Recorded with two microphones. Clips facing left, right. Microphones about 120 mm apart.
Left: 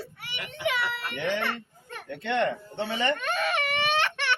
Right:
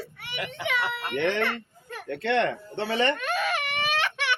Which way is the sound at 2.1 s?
75° right (ahead or behind).